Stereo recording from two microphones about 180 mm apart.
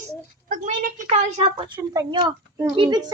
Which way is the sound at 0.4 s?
50° right (ahead or behind).